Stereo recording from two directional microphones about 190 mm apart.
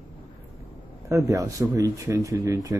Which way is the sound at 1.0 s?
15° right (ahead or behind).